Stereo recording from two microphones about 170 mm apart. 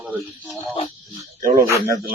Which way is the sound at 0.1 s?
Centre (ahead or behind).